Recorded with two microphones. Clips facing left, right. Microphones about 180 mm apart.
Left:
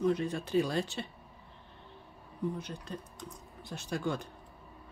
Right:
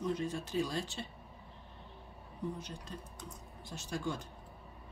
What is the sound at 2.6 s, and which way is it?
Speech, 60° left (ahead or behind).